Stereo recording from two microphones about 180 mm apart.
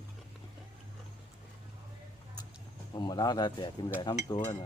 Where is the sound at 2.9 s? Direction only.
25° left (ahead or behind).